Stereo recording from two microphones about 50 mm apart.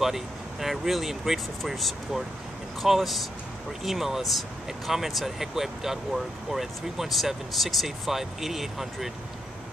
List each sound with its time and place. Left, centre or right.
0.0 s speech: centre